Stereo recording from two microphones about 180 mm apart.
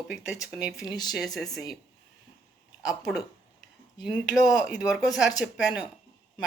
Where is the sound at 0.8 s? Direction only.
20° left (ahead or behind).